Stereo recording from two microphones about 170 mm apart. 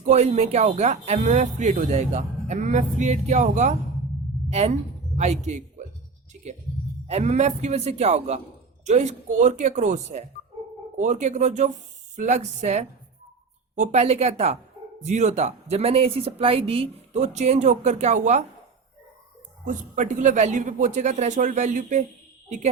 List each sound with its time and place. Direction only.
0.1 s a woman's voice: 40° right (ahead or behind)
7.1 s speech: 40° right (ahead or behind)
19.6 s speech: 45° right (ahead or behind)